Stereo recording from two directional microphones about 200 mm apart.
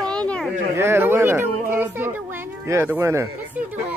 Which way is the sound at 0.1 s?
5° left (ahead or behind).